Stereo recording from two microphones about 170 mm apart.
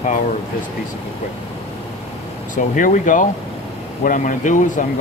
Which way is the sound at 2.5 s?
50° left (ahead or behind).